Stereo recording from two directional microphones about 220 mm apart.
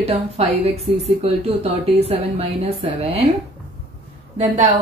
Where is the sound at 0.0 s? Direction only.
30° right (ahead or behind).